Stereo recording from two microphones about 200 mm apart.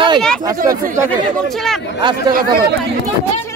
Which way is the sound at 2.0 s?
25° right (ahead or behind).